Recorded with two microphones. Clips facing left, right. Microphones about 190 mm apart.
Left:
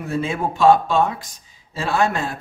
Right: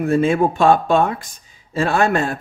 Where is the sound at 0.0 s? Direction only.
55° right (ahead or behind).